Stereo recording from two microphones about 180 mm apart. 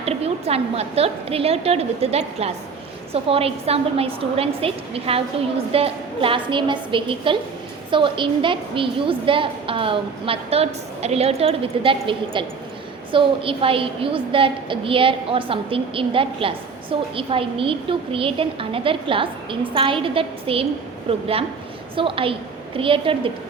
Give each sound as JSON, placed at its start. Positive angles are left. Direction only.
{"t": 0.0, "sound": "a woman's voice", "side_deg": -35}